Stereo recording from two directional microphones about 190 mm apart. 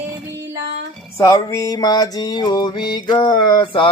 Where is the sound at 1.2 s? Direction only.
15° left (ahead or behind).